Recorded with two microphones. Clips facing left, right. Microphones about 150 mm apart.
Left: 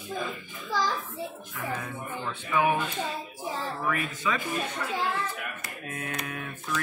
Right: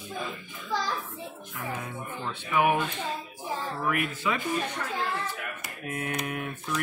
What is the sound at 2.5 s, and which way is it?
Speech, 15° right (ahead or behind).